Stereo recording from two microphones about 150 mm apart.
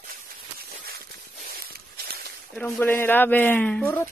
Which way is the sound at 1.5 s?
85° right.